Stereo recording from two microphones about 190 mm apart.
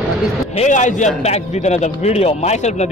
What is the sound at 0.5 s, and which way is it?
A man's voice, 40° left (ahead or behind).